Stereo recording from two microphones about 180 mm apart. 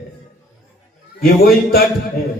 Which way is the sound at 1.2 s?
55° left (ahead or behind).